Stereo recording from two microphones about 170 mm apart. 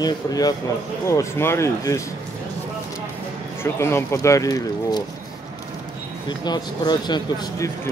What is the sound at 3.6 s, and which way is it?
Speech, 15° left (ahead or behind).